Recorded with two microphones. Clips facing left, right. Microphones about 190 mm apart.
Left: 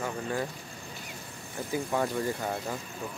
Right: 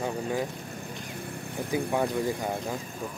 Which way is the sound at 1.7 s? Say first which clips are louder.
Right 2 dB; 15° right (ahead or behind).